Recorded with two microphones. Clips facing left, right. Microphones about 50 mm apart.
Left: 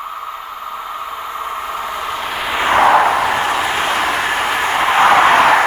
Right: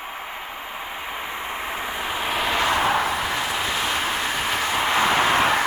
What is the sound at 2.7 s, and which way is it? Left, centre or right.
Vehicle, left.